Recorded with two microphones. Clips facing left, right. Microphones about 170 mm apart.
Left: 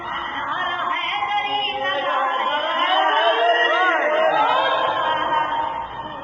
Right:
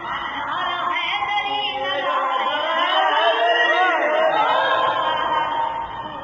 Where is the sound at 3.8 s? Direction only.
15° right (ahead or behind).